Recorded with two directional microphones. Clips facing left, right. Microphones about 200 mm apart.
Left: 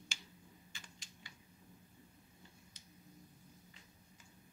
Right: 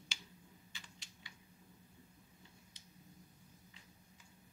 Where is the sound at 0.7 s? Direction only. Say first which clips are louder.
Left 1 dB; 45° left (ahead or behind).